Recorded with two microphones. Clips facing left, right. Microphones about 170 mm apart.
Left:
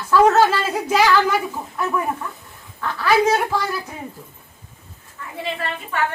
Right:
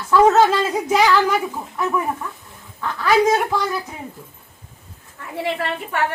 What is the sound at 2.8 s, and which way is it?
Speech, 15° right (ahead or behind).